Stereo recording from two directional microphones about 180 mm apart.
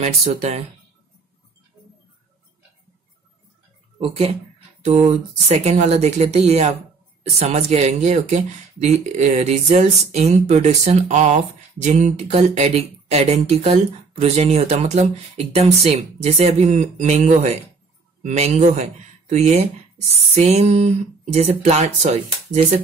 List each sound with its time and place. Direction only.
0.0 s speech: 35° right (ahead or behind)
4.0 s speech: 35° right (ahead or behind)